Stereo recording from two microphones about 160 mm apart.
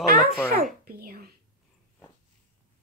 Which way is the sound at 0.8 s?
70° right (ahead or behind).